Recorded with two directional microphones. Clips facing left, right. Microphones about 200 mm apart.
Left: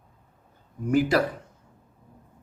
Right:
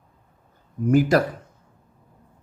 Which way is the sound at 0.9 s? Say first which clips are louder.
Right 4 dB; 45° right (ahead or behind).